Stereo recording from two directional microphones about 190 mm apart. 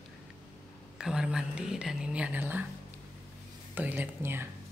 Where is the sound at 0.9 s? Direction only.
5° right (ahead or behind).